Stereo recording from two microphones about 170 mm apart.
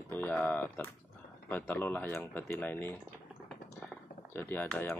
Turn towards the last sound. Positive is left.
turn(degrees=10)  # may be behind; listen again after turning